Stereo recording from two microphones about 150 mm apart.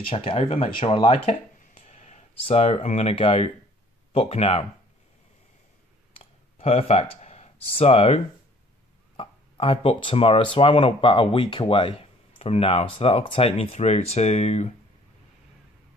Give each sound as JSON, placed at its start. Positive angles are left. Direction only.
{"t": 0.1, "sound": "speech", "side_deg": 35}
{"t": 6.1, "sound": "a sound", "side_deg": 40}
{"t": 9.1, "sound": "speech", "side_deg": 35}